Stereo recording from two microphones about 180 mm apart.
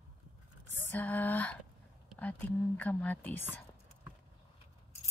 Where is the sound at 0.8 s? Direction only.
10° left (ahead or behind).